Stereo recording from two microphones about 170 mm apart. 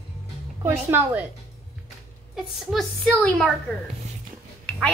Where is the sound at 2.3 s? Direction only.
Centre (ahead or behind).